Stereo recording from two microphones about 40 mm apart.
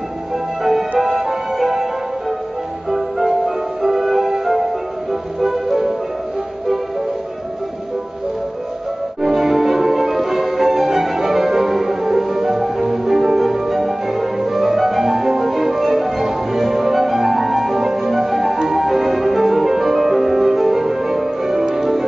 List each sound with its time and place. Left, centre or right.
0.7 s music: centre
9.2 s music: centre